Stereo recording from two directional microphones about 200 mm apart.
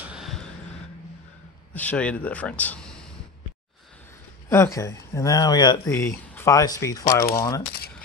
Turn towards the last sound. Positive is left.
turn(degrees=15)  # may be behind; listen again after turning